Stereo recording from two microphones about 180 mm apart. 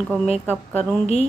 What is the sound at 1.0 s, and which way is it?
Speech, 40° left (ahead or behind).